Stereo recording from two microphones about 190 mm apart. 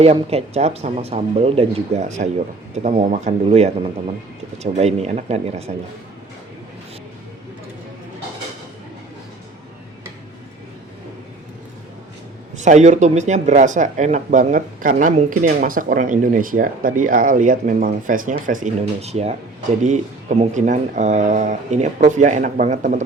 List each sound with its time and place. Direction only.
0.0 s speech: 30° right (ahead or behind)
12.5 s speech: 40° right (ahead or behind)